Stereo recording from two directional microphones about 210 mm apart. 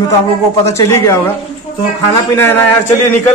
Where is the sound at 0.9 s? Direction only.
15° left (ahead or behind).